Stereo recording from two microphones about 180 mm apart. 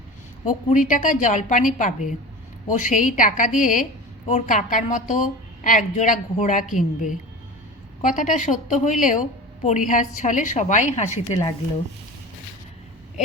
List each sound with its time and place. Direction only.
0.4 s a woman's voice: 45° left (ahead or behind)